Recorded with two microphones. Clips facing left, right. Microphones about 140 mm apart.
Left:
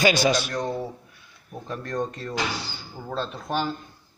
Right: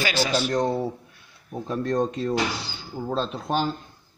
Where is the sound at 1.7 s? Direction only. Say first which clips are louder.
Right 5 dB; 20° right (ahead or behind).